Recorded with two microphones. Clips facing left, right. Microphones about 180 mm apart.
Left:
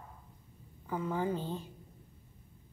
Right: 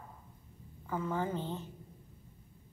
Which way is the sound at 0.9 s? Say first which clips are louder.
Left 1 dB; 15° left (ahead or behind).